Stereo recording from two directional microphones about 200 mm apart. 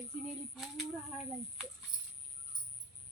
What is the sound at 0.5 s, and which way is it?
Speech, centre (ahead or behind).